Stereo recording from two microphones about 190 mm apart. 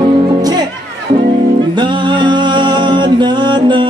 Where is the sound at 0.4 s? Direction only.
20° right (ahead or behind).